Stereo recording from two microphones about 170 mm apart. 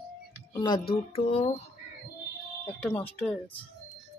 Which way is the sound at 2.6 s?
10° left (ahead or behind).